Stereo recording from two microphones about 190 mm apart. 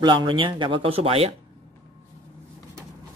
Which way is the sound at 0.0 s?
25° right (ahead or behind).